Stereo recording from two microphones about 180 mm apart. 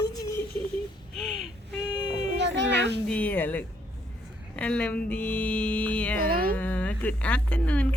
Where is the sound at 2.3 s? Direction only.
75° right (ahead or behind).